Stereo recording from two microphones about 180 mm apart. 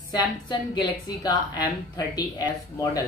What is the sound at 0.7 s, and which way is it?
Speech, 20° left (ahead or behind).